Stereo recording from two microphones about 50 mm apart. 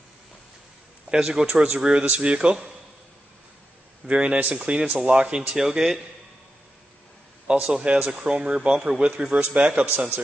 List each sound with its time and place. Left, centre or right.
1.1 s a man's voice: centre
1.5 s speech: right
1.8 s a man's voice: centre
4.1 s speech: right
4.6 s a man's voice: centre
5.6 s a man's voice: centre
7.5 s a man's voice: right
9.4 s speech: right
9.8 s speech: right